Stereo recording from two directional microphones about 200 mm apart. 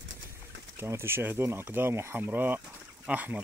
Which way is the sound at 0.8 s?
10° right (ahead or behind).